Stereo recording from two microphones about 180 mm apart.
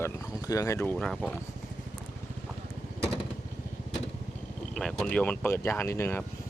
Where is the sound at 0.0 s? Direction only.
15° left (ahead or behind).